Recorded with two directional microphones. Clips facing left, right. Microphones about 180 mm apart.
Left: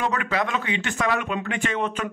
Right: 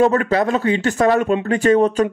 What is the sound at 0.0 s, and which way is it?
Speech, 40° right (ahead or behind).